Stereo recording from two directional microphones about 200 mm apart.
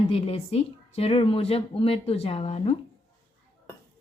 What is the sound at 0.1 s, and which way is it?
Speech, 30° left (ahead or behind).